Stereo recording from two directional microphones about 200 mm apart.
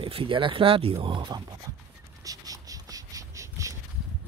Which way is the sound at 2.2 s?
15° right (ahead or behind).